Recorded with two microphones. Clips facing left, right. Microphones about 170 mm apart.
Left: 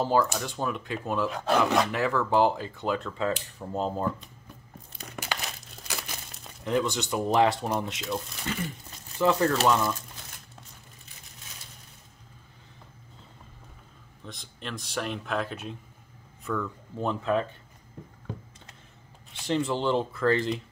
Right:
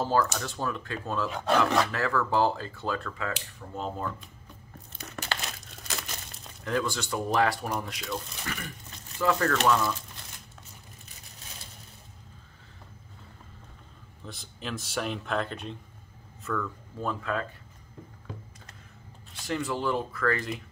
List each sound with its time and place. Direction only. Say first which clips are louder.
0.0 s speech: left 2 dB; 15° left (ahead or behind); by 4.1 s 35° left (ahead or behind)
5.0 s crumpling: even; 15° left (ahead or behind)
6.6 s speech: left 3 dB; 20° left (ahead or behind)
14.2 s speech: right 1 dB; 5° right (ahead or behind)
16.4 s speech: left 1 dB; 15° left (ahead or behind)
19.4 s speech: left 3 dB; 25° left (ahead or behind)